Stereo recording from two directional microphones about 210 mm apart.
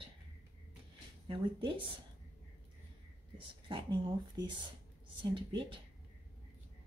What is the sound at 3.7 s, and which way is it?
Speech, 20° right (ahead or behind).